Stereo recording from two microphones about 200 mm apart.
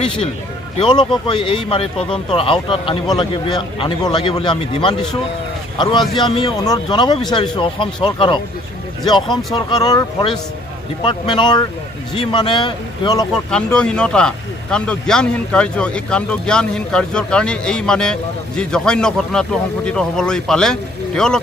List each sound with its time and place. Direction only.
0.7 s a man's voice: 25° left (ahead or behind)
13.3 s speech: 5° left (ahead or behind)